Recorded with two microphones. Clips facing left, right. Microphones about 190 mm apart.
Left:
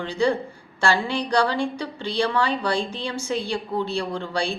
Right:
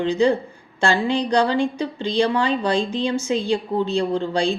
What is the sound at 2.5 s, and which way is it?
Speech, 10° left (ahead or behind).